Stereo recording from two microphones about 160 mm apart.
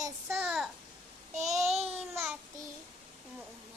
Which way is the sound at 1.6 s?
40° right (ahead or behind).